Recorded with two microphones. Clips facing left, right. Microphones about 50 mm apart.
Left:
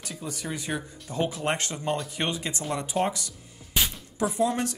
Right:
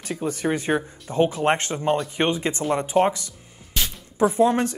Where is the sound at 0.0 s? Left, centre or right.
Right.